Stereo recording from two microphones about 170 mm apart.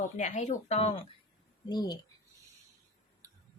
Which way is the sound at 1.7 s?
25° left (ahead or behind).